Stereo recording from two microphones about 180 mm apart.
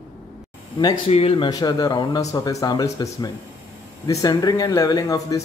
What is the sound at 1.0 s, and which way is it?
Speech, 30° left (ahead or behind).